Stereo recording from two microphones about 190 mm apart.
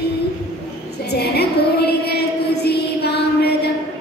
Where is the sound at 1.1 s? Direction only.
60° left (ahead or behind).